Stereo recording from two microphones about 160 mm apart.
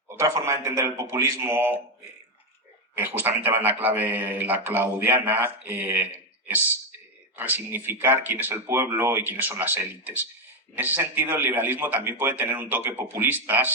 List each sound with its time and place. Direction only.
0.2 s a man's voice: 20° right (ahead or behind)
2.9 s a man's voice: 10° right (ahead or behind)
7.3 s a man's voice: 10° right (ahead or behind)